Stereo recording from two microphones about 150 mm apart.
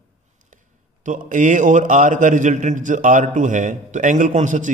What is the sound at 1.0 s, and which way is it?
A man's voice, 60° right (ahead or behind).